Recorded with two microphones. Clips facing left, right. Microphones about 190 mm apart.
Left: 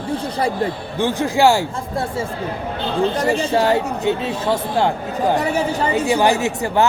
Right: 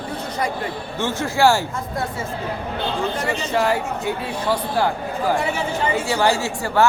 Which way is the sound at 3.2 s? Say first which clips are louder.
Left 2 dB; 30° left (ahead or behind).